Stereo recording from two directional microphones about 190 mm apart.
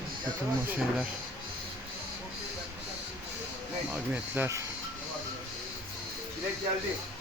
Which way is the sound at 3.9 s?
10° right (ahead or behind).